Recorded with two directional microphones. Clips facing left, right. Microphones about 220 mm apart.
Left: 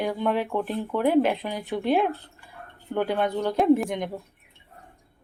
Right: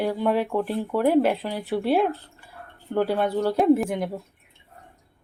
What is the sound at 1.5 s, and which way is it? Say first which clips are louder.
Speech: right 3 dB; 15° left (ahead or behind).